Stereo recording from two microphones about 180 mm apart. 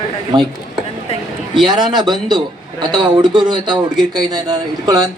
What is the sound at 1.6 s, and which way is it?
A man's voice, 25° right (ahead or behind).